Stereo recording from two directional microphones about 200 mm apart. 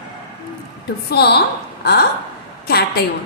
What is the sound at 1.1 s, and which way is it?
A woman's voice, 55° left (ahead or behind).